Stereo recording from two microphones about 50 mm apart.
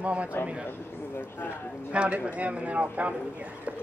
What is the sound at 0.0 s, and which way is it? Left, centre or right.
Speech, right.